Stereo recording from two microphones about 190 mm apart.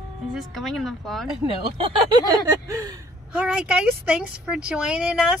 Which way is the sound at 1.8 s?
20° right (ahead or behind).